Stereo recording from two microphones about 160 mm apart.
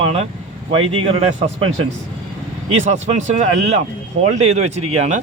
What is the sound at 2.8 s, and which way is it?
Speech, 45° right (ahead or behind).